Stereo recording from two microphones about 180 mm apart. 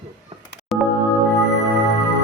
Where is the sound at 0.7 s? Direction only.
Centre (ahead or behind).